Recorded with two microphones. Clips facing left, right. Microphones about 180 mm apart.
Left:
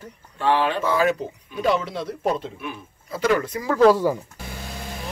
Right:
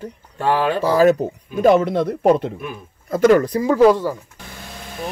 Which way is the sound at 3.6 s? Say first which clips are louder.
Even; 15° right (ahead or behind).